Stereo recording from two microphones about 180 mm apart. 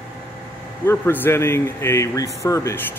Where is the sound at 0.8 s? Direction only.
10° left (ahead or behind).